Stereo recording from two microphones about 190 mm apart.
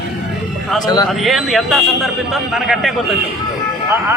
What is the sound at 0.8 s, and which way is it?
Speech, 20° left (ahead or behind).